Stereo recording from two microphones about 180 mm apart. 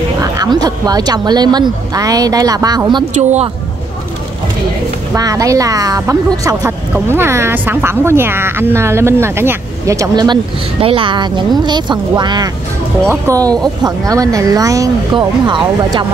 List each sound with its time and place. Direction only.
0.2 s speech: 20° right (ahead or behind)
5.1 s speech: 20° right (ahead or behind)